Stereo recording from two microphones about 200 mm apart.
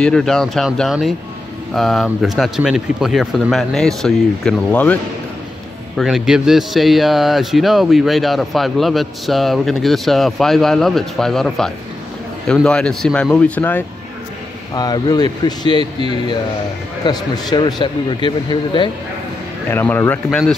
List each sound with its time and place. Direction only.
0.0 s speech: 5° left (ahead or behind)
5.9 s speech: centre (ahead or behind)
14.8 s speech: 20° left (ahead or behind)
17.0 s speech: 20° left (ahead or behind)
19.7 s speech: 10° left (ahead or behind)